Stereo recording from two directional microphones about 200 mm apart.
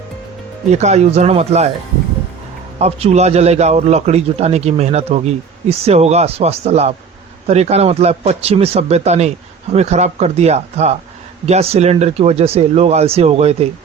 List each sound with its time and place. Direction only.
0.7 s a man's voice: 35° right (ahead or behind)
2.7 s a man's voice: 30° right (ahead or behind)